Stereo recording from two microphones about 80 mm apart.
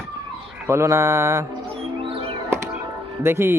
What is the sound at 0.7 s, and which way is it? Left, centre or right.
Speech, right.